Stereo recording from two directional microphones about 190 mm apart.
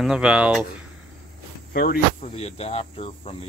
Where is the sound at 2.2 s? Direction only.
35° left (ahead or behind).